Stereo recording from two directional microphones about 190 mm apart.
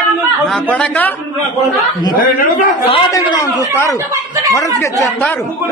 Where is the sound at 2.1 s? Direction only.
50° left (ahead or behind).